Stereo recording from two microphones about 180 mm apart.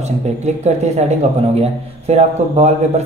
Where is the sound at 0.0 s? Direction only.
40° right (ahead or behind).